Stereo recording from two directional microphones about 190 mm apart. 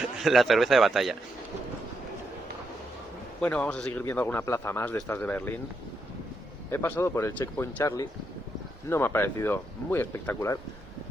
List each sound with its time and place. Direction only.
0.2 s a man's voice: centre (ahead or behind)
3.4 s speech: 5° left (ahead or behind)
6.7 s speech: 10° left (ahead or behind)